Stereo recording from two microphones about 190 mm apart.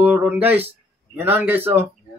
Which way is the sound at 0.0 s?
10° right (ahead or behind).